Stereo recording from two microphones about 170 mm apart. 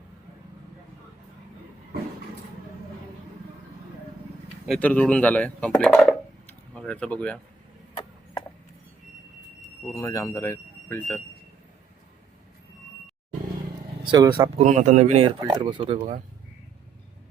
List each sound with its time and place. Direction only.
4.8 s speech: 5° left (ahead or behind)
9.9 s speech: 15° left (ahead or behind)
14.0 s speech: 25° right (ahead or behind)
14.6 s speech: 45° right (ahead or behind)
15.4 s speech: 25° right (ahead or behind)